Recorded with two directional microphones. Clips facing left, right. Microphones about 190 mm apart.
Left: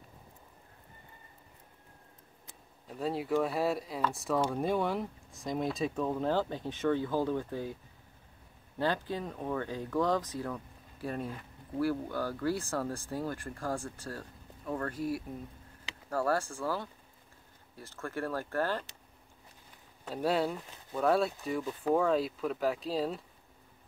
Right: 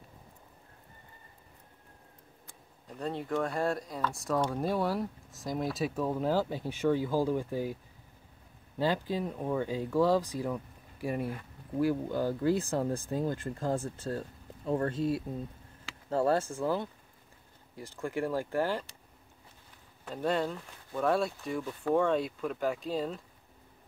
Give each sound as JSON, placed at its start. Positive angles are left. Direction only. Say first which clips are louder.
{"t": 2.9, "sound": "speech", "louder": "left 2 dB", "side_deg": 5}
{"t": 8.7, "sound": "speech", "louder": "right 2 dB", "side_deg": -10}
{"t": 20.1, "sound": "speech", "louder": "left 1 dB", "side_deg": 5}